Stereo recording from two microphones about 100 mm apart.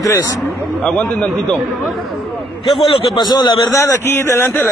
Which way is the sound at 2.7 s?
50° left (ahead or behind).